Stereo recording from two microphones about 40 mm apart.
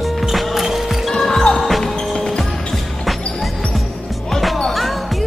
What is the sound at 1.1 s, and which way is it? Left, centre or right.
Basketball bounce, centre.